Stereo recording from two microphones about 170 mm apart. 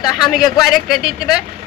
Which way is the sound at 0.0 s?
Centre (ahead or behind).